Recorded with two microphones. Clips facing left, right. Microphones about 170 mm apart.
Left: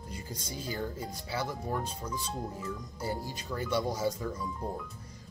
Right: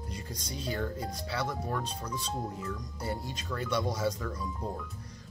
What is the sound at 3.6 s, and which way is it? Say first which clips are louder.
Speech: left 1 dB; centre (ahead or behind).